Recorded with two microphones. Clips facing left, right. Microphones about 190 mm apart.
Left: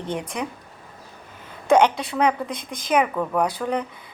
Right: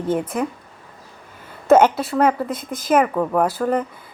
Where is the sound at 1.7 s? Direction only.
5° right (ahead or behind).